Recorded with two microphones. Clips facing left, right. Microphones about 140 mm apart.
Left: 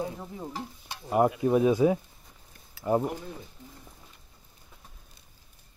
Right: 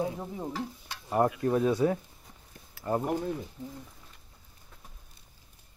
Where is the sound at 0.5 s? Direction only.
15° left (ahead or behind).